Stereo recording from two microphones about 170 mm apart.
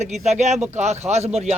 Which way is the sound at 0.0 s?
40° right (ahead or behind).